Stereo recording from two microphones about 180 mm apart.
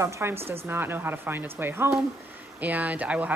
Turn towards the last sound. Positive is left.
turn(degrees=-10)  # may be behind; listen again after turning